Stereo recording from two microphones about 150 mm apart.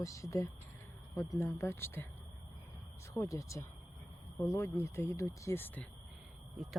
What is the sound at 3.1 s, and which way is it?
Speech, 20° left (ahead or behind).